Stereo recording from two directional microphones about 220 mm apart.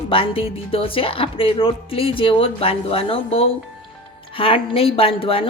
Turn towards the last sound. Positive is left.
turn(degrees=25)  # may be behind; listen again after turning